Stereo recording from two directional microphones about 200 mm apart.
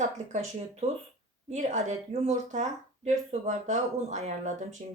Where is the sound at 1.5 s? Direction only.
35° right (ahead or behind).